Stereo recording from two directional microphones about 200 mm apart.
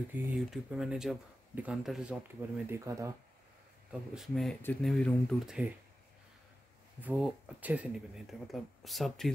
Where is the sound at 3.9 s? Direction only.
Centre (ahead or behind).